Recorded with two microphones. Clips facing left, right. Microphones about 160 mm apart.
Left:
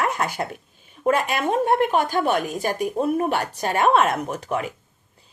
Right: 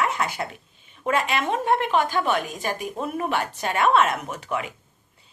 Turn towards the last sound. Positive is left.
turn(degrees=35)  # may be behind; listen again after turning